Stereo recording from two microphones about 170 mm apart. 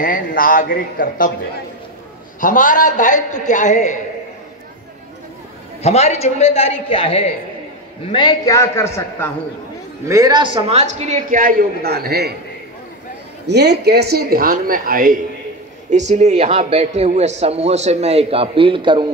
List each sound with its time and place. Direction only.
0.0 s a man's voice: 50° left (ahead or behind)
2.4 s a man's voice: 50° left (ahead or behind)
5.8 s a man's voice: 40° left (ahead or behind); by 9.3 s 15° left (ahead or behind)
10.0 s a woman's voice: 20° right (ahead or behind); by 12.4 s 70° right (ahead or behind)
13.5 s speech: 80° right; by 15.1 s 55° right (ahead or behind)
15.9 s a man's voice: 40° right (ahead or behind)